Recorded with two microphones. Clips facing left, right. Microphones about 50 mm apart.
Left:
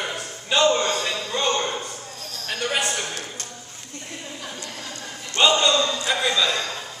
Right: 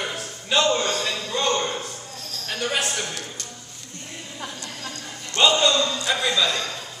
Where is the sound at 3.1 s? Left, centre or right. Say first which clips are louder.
Left 1 dB; left.